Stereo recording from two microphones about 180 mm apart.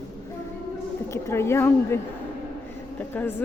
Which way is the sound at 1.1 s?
15° left (ahead or behind).